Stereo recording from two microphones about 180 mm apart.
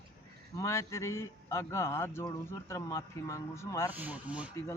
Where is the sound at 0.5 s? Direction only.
15° left (ahead or behind).